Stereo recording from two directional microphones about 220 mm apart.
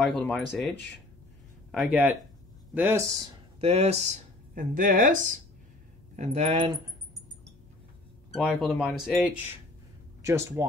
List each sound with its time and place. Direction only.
0.1 s speech: 5° left (ahead or behind)
3.6 s speech: 30° right (ahead or behind)
8.3 s speech: centre (ahead or behind)